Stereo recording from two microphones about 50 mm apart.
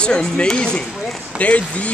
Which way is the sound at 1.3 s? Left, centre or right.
Left.